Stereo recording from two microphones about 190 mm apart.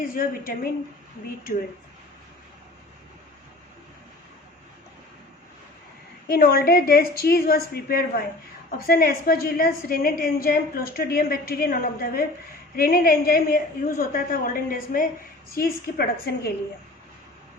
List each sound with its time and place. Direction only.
0.0 s a woman's voice: 45° left (ahead or behind)
6.2 s a woman's voice: 50° left (ahead or behind)